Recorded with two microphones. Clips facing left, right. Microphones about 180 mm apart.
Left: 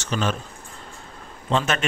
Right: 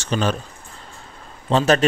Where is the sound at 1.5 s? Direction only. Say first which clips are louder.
Right 6 dB; 35° right (ahead or behind).